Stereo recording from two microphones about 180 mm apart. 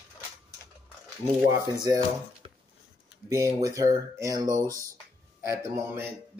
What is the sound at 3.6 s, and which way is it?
Speech, 20° right (ahead or behind).